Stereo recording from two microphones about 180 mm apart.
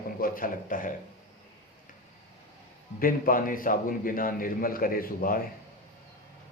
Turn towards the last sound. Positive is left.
turn(degrees=55)  # may be behind; listen again after turning